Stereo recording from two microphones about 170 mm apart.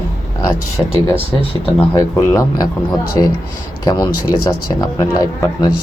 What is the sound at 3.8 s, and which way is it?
Speech, 20° left (ahead or behind).